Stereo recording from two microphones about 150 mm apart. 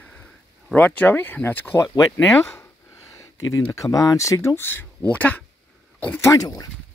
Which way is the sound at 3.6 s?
20° left (ahead or behind).